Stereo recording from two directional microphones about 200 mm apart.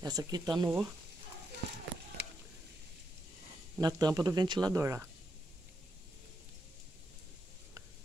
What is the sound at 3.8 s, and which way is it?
Speech, 20° right (ahead or behind).